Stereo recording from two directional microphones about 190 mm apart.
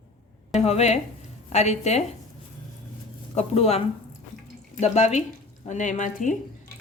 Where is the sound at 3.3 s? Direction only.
35° left (ahead or behind).